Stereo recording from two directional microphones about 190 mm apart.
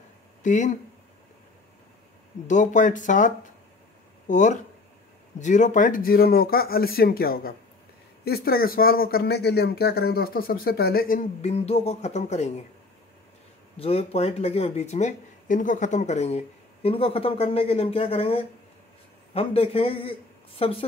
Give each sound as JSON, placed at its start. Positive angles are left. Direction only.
{"t": 0.4, "sound": "speech", "side_deg": 40}
{"t": 2.4, "sound": "speech", "side_deg": 40}
{"t": 13.7, "sound": "a man's voice", "side_deg": 30}